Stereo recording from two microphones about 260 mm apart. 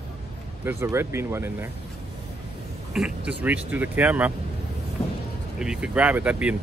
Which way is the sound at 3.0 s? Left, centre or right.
Centre.